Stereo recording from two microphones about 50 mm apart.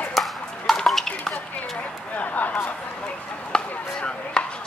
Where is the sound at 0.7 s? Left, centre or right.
Centre.